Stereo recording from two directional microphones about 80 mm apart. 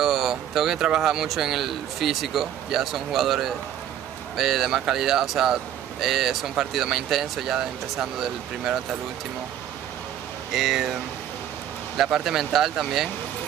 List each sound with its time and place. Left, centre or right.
0.0 s speech: centre
10.5 s speech: centre
12.0 s speech: centre